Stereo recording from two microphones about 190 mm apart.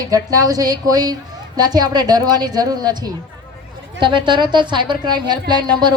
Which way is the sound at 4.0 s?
25° right (ahead or behind).